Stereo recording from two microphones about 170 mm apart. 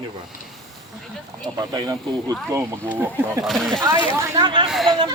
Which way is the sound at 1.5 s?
20° right (ahead or behind).